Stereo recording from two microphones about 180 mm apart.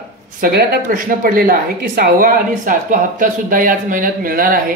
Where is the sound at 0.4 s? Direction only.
55° right (ahead or behind).